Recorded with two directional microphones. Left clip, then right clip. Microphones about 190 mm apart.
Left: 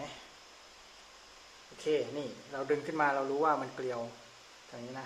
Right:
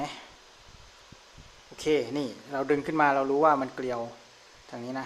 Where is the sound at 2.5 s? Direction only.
45° right (ahead or behind).